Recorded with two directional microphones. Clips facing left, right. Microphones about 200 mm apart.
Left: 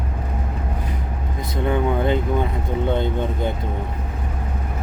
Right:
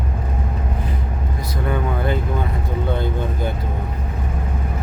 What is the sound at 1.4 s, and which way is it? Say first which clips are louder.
Speech: left 3 dB; 20° left (ahead or behind).